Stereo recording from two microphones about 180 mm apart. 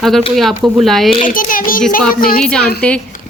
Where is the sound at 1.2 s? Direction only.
50° left (ahead or behind).